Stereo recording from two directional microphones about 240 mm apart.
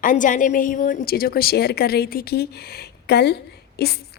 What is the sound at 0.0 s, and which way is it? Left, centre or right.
A woman's voice, left.